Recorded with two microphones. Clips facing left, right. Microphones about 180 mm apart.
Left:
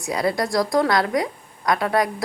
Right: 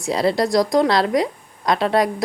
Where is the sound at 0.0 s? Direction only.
25° right (ahead or behind).